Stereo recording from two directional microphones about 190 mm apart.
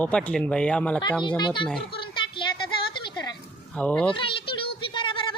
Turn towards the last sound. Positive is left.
turn(degrees=25)  # may be behind; listen again after turning